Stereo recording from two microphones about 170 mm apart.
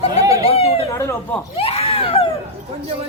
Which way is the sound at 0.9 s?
15° left (ahead or behind).